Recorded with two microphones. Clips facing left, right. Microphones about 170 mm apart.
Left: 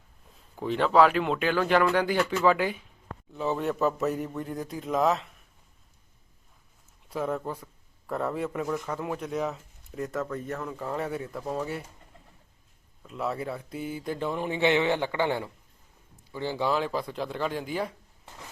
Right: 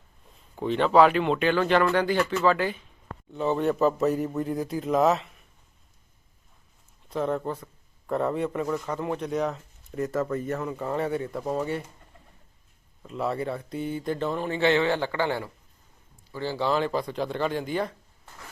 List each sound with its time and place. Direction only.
0.5 s speech: centre (ahead or behind)
3.3 s speech: centre (ahead or behind)
7.1 s speech: 5° left (ahead or behind)
13.1 s speech: centre (ahead or behind); by 16.7 s 15° left (ahead or behind)
16.7 s speech: centre (ahead or behind)